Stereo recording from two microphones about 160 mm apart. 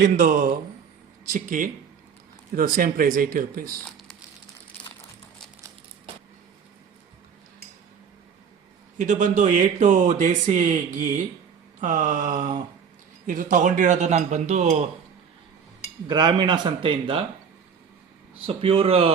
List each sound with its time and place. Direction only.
0.0 s speech: 55° right (ahead or behind)
9.0 s speech: 50° right (ahead or behind)
16.0 s speech: 30° right (ahead or behind)
18.4 s speech: 35° right (ahead or behind)